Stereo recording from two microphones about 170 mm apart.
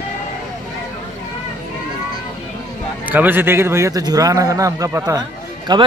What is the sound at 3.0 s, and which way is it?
A man's voice, 10° right (ahead or behind).